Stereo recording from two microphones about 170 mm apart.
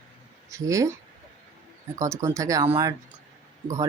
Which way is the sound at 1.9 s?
15° right (ahead or behind).